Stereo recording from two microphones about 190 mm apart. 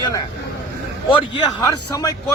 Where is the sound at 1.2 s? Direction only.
15° left (ahead or behind).